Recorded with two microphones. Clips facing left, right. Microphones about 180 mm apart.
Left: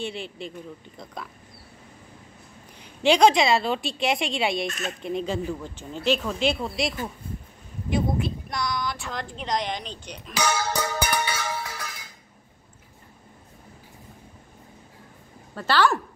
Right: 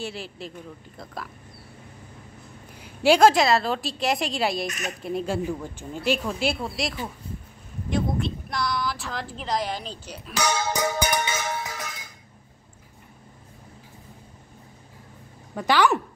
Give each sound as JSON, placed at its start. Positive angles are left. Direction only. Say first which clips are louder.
{"t": 0.0, "sound": "a woman's voice", "louder": "left 1 dB", "side_deg": -5}
{"t": 2.8, "sound": "a woman's voice", "louder": "right 1 dB", "side_deg": -5}
{"t": 10.7, "sound": "music", "louder": "right 2 dB", "side_deg": -15}
{"t": 15.5, "sound": "speech", "louder": "right 1 dB", "side_deg": -15}